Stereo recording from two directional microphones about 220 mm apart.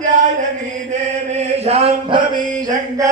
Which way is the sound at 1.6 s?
25° right (ahead or behind).